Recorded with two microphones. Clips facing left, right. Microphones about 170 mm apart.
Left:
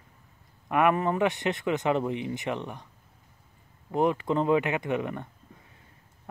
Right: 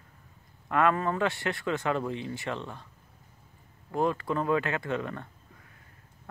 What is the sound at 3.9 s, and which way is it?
Speech, 20° left (ahead or behind).